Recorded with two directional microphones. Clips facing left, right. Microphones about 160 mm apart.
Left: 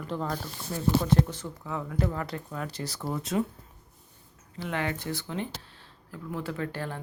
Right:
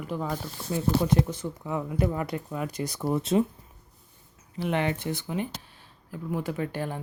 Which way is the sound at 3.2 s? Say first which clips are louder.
Right 4 dB; 25° right (ahead or behind).